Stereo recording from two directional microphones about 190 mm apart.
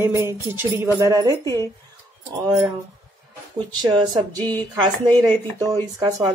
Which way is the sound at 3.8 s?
20° right (ahead or behind).